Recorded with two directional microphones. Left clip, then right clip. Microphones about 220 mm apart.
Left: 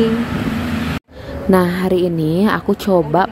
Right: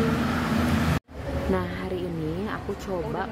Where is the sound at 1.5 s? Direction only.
40° left (ahead or behind).